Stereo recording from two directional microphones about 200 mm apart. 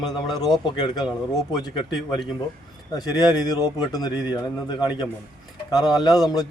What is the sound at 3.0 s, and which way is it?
A man's voice, 20° left (ahead or behind).